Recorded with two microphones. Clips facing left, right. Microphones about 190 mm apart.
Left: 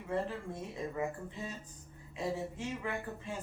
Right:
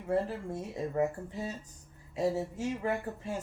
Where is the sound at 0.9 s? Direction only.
40° right (ahead or behind).